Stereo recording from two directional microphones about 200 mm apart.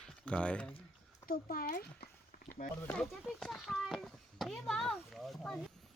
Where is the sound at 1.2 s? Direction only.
45° left (ahead or behind).